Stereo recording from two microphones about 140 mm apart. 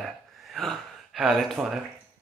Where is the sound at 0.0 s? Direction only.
Centre (ahead or behind).